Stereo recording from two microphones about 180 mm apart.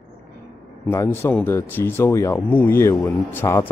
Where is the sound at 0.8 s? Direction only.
15° left (ahead or behind).